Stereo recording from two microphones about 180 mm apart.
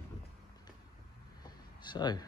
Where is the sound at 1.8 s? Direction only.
25° left (ahead or behind).